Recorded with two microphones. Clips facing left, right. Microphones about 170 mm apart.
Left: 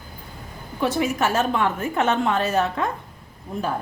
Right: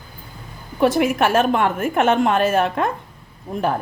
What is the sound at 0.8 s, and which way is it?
A woman's voice, 60° right (ahead or behind).